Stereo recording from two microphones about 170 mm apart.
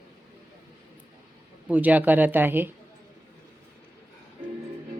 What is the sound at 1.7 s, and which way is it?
Speech, 10° right (ahead or behind).